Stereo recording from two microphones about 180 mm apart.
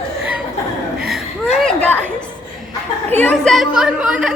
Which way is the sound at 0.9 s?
5° right (ahead or behind).